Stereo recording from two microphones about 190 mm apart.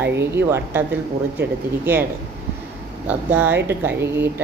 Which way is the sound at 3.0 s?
10° right (ahead or behind).